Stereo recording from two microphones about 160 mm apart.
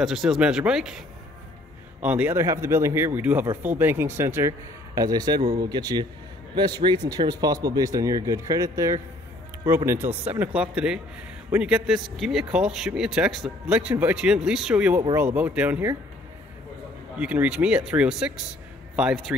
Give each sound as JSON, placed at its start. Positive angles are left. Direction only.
{"t": 0.0, "sound": "speech", "side_deg": 0}
{"t": 17.2, "sound": "speech", "side_deg": -10}